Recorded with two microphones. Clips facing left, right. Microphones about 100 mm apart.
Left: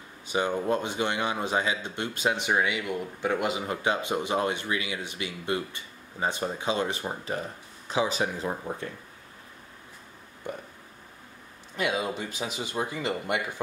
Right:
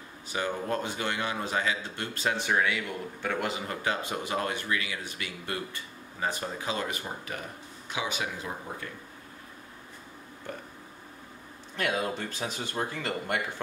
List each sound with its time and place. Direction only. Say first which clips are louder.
0.3 s a man's voice: left 4 dB; 20° left (ahead or behind)
10.4 s burping: left 4 dB; 15° left (ahead or behind)
11.7 s speech: left 1 dB; 10° left (ahead or behind)